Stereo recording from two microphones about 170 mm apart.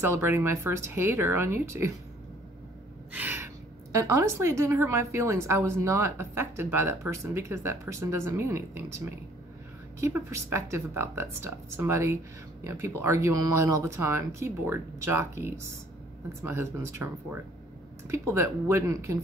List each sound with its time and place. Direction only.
0.0 s a woman's voice: 15° right (ahead or behind)
3.1 s gasp: 10° right (ahead or behind)
3.9 s a woman's voice: 20° right (ahead or behind)